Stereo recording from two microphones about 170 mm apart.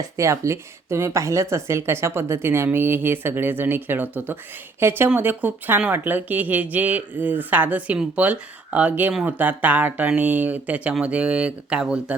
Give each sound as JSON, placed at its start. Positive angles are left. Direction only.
{"t": 0.2, "sound": "speech", "side_deg": -15}